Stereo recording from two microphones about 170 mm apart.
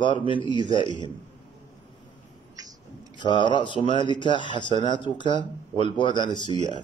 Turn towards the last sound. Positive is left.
turn(degrees=30)  # may be behind; listen again after turning